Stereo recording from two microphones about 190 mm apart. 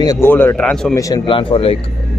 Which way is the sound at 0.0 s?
15° left (ahead or behind).